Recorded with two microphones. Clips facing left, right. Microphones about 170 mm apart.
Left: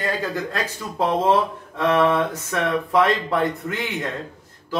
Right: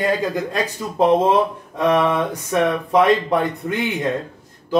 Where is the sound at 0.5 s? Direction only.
15° right (ahead or behind).